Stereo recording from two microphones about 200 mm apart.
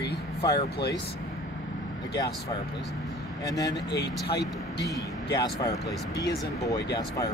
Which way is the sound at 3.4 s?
20° left (ahead or behind).